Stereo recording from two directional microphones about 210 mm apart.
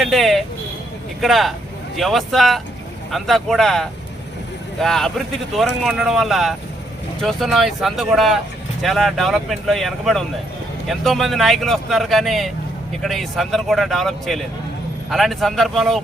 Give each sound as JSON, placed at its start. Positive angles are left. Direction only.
{"t": 0.0, "sound": "vehicle", "side_deg": 0}
{"t": 1.2, "sound": "speech", "side_deg": 0}